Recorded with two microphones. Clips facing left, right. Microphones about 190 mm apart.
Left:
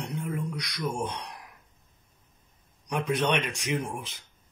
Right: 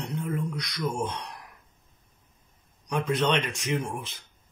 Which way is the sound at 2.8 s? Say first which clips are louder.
Right 1 dB; 15° left (ahead or behind).